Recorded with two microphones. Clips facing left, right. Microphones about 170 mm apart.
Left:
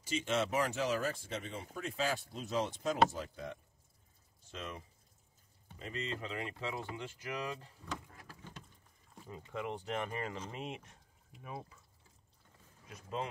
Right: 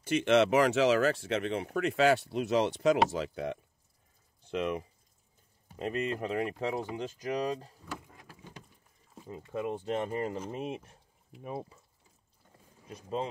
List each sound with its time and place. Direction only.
0.0 s speech: 70° right (ahead or behind)
6.1 s speech: 45° right (ahead or behind)
8.1 s a sound: 15° right (ahead or behind)
9.2 s speech: 20° right (ahead or behind)
11.4 s speech: 30° right (ahead or behind)
12.8 s speech: 30° right (ahead or behind)